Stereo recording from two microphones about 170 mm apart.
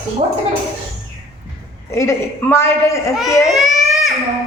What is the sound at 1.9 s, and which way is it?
A woman's voice, 15° left (ahead or behind).